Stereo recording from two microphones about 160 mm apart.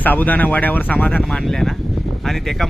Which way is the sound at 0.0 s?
10° left (ahead or behind).